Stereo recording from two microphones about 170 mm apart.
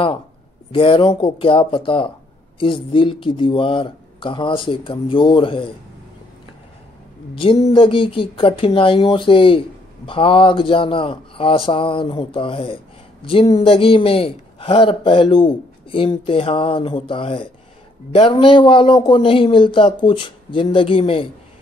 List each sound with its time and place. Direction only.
0.7 s speech: 30° left (ahead or behind)
7.7 s speech: 30° left (ahead or behind)